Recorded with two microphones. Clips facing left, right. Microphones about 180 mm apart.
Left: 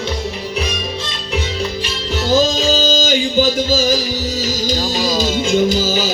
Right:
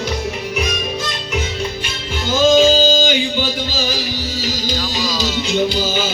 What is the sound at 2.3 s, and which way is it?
Music, 40° left (ahead or behind).